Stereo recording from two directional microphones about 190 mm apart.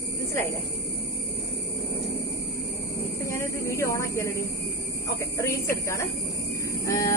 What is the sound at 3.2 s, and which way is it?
A woman's voice, 15° left (ahead or behind).